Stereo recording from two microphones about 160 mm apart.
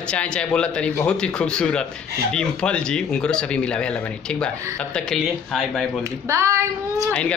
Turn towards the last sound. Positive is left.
turn(degrees=-20)  # may be behind; listen again after turning